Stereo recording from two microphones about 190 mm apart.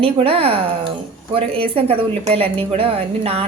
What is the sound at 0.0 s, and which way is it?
A woman's voice, 30° right (ahead or behind).